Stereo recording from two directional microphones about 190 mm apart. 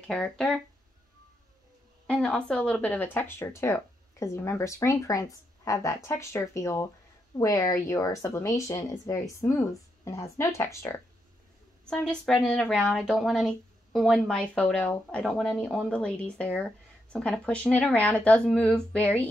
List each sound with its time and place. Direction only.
0.1 s speech: 5° left (ahead or behind)
2.0 s speech: 5° left (ahead or behind)
11.8 s speech: 5° left (ahead or behind)